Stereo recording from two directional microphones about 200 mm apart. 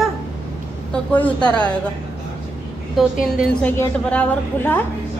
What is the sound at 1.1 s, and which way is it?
Speech, 5° left (ahead or behind).